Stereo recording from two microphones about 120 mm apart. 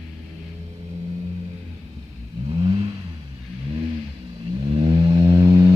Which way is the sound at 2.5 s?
55° right (ahead or behind).